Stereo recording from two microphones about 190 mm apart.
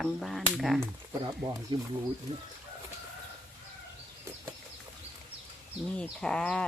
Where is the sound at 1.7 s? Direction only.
25° right (ahead or behind).